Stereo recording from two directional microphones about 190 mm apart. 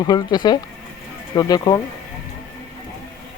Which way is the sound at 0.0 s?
20° left (ahead or behind).